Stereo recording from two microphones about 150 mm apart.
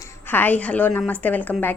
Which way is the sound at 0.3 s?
15° left (ahead or behind).